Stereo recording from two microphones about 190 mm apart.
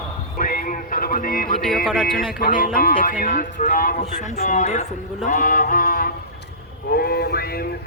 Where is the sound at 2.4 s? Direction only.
45° left (ahead or behind).